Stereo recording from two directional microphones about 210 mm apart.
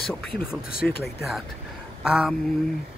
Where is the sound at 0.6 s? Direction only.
45° left (ahead or behind).